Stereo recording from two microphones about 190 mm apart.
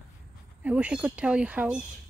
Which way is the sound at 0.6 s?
5° right (ahead or behind).